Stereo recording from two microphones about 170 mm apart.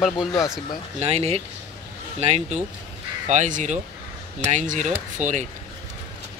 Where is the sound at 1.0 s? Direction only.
40° right (ahead or behind).